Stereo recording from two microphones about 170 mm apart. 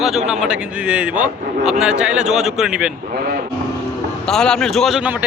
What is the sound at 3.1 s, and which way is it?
Speech, 60° right (ahead or behind).